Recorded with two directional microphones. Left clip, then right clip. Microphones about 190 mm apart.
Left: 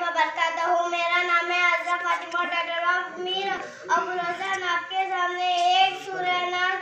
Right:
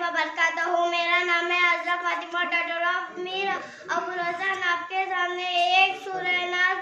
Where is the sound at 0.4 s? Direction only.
15° right (ahead or behind).